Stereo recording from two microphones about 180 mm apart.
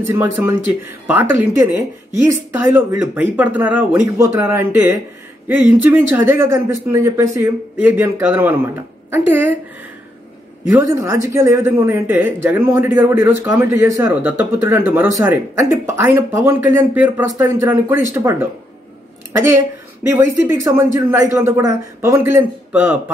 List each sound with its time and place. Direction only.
0.0 s speech: 10° right (ahead or behind)
10.7 s speech: 15° right (ahead or behind)